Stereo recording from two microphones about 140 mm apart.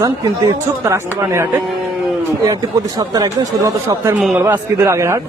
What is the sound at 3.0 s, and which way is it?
Speech, 25° right (ahead or behind).